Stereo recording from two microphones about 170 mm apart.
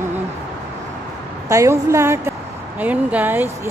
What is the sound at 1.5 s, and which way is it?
Speech, 15° right (ahead or behind).